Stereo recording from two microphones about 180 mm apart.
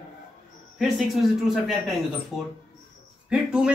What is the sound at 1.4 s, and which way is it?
Speech, centre (ahead or behind).